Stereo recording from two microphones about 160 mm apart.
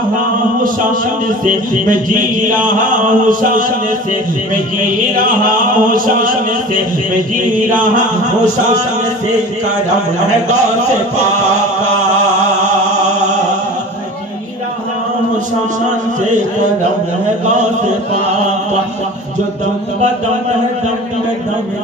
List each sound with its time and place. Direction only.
1.4 s mantra: 55° right (ahead or behind)
5.1 s mantra: 60° right (ahead or behind)